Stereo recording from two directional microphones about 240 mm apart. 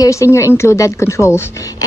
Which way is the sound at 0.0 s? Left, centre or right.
Centre.